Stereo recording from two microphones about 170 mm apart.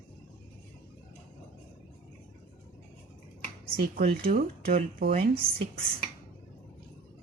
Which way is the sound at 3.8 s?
60° right (ahead or behind).